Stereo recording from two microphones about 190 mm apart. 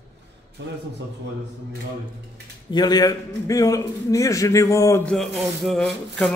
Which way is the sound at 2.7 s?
20° left (ahead or behind).